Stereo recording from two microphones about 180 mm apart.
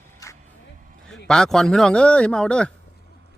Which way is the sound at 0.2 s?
20° left (ahead or behind).